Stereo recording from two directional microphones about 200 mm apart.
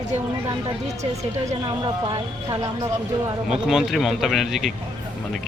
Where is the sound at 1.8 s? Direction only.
20° right (ahead or behind).